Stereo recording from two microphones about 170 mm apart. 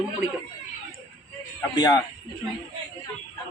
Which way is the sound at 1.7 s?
20° left (ahead or behind).